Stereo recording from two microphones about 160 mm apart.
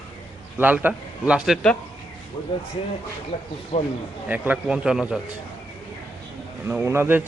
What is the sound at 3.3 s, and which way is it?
Speech, 40° left (ahead or behind).